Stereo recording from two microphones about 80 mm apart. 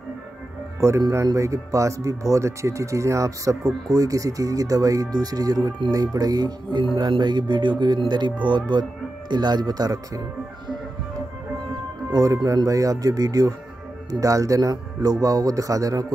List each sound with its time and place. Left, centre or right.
0.7 s speech: right
12.1 s speech: right